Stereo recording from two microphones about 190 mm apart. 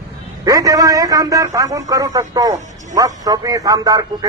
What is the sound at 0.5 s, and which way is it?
A man's voice, 20° right (ahead or behind).